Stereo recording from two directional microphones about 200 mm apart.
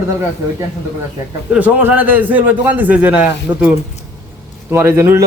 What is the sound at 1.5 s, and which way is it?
A man's voice, 10° right (ahead or behind).